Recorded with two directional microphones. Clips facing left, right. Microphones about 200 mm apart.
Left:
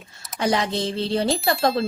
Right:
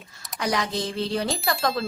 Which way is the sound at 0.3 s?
30° left (ahead or behind).